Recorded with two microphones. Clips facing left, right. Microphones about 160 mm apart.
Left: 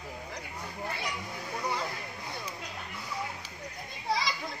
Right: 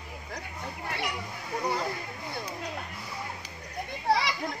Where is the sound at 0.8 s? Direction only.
70° right (ahead or behind).